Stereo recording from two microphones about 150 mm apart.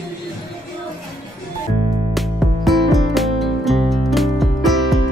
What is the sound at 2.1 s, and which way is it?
Music, centre (ahead or behind).